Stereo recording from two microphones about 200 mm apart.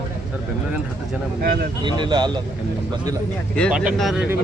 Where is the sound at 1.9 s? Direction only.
20° right (ahead or behind).